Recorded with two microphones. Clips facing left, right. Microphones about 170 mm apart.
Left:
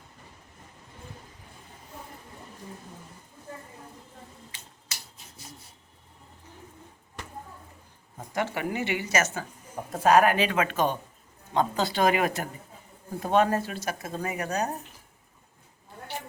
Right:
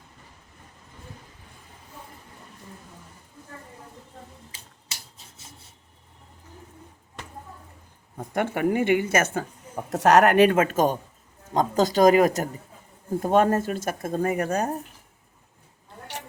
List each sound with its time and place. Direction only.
4.9 s rub: 30° right (ahead or behind)
8.3 s speech: 55° right (ahead or behind)
9.9 s speech: 75° right (ahead or behind); by 14.7 s 50° right (ahead or behind)